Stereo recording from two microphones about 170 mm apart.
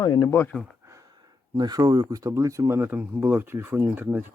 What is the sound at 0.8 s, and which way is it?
Speech, 20° right (ahead or behind).